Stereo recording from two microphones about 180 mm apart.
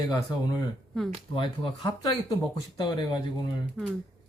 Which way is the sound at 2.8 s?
25° left (ahead or behind).